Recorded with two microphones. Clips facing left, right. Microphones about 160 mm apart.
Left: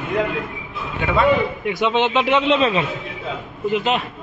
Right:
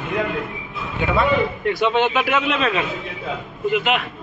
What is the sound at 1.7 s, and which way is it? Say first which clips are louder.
A man's voice: even; 20° left (ahead or behind).